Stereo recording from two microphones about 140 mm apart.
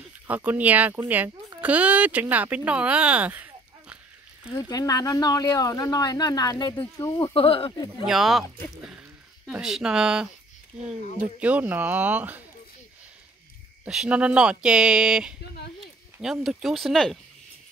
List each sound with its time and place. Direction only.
0.3 s speech: 10° right (ahead or behind)
4.6 s speech: 25° left (ahead or behind)
7.2 s speech: 40° left (ahead or behind)
8.0 s speech: centre (ahead or behind)
13.8 s speech: 5° right (ahead or behind)